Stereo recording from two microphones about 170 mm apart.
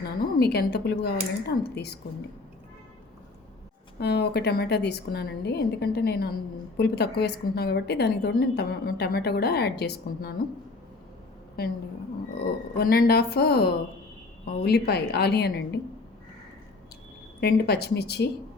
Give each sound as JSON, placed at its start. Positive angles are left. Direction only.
{"t": 0.0, "sound": "a woman's voice", "side_deg": 70}
{"t": 4.0, "sound": "a woman's voice", "side_deg": 75}
{"t": 12.3, "sound": "a woman's voice", "side_deg": 70}
{"t": 17.4, "sound": "a woman's voice", "side_deg": 70}